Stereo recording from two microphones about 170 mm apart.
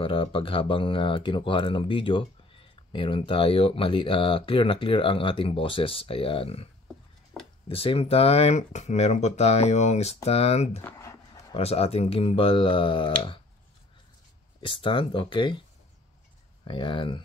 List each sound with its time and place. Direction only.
0.0 s speech: 30° left (ahead or behind)
10.8 s a sound: 15° left (ahead or behind)
11.5 s speech: 35° left (ahead or behind)
14.6 s speech: 30° left (ahead or behind)
16.6 s speech: 30° left (ahead or behind)